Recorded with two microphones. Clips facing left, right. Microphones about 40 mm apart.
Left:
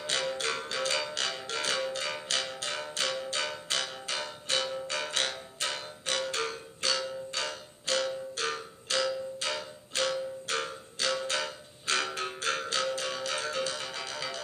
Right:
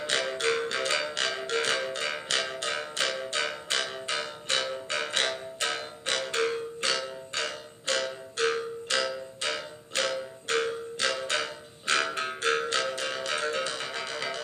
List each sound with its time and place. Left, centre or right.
0.2 s music: right